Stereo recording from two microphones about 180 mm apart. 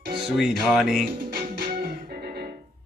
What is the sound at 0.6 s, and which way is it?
Music, centre (ahead or behind).